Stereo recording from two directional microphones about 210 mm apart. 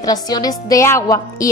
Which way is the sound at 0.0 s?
15° left (ahead or behind).